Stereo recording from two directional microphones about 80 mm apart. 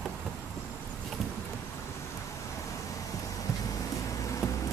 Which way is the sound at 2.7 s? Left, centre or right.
Left.